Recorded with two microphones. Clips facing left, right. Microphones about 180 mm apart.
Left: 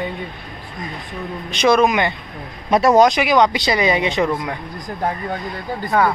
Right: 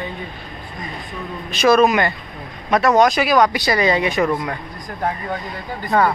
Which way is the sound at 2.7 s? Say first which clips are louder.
Left 2 dB; 30° left (ahead or behind).